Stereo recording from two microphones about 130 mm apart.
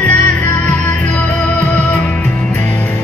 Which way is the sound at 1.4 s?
10° left (ahead or behind).